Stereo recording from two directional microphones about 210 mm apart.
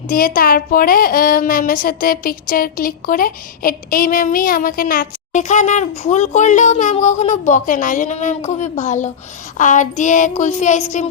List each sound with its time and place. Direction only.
0.1 s a woman's voice: 40° left (ahead or behind)